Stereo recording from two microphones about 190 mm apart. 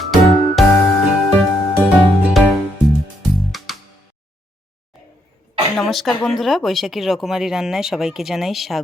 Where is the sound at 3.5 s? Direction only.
Centre (ahead or behind).